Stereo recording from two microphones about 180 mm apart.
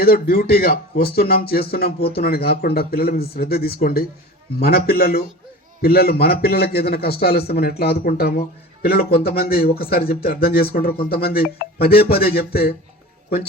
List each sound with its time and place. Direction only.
0.0 s speech: 60° left (ahead or behind)